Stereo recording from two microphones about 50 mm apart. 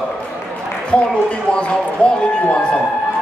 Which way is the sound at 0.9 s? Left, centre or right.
Left.